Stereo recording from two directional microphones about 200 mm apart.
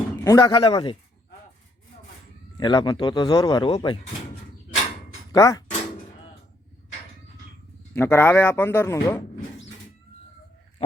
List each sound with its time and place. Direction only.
0.3 s speech: 20° left (ahead or behind)
2.6 s speech: 20° left (ahead or behind)
5.3 s speech: 15° left (ahead or behind)
7.9 s speech: 10° left (ahead or behind)